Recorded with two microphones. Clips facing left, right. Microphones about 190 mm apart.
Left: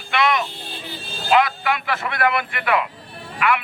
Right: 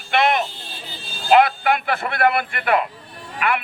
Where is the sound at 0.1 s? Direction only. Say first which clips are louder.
Right 2 dB; 55° right (ahead or behind).